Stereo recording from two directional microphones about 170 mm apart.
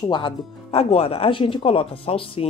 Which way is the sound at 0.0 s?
25° left (ahead or behind).